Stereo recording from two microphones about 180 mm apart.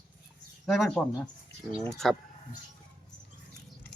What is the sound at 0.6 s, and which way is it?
Speech, centre (ahead or behind).